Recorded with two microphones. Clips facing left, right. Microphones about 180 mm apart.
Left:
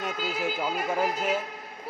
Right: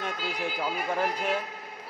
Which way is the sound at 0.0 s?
5° left (ahead or behind).